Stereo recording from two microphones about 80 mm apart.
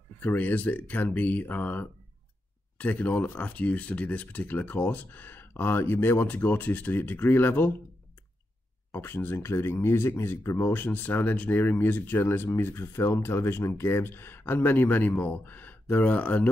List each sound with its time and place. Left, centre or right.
0.2 s speech: left
8.9 s speech: left